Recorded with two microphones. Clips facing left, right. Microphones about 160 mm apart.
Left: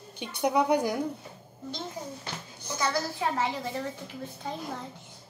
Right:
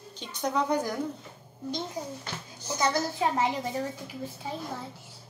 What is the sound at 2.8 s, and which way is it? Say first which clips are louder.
Speech: right 2 dB; 20° right (ahead or behind).